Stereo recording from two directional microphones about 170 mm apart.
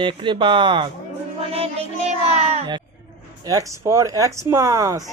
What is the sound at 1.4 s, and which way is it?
Music, 35° right (ahead or behind).